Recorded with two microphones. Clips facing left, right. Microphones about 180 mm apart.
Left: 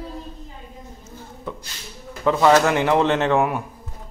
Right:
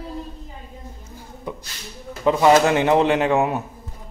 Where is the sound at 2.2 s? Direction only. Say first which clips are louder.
Right 1 dB; 15° right (ahead or behind).